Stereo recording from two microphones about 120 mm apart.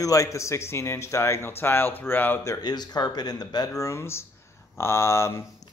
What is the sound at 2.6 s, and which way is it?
Speech, 35° left (ahead or behind).